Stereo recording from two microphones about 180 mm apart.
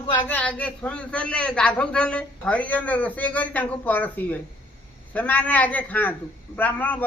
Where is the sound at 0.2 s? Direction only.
10° left (ahead or behind).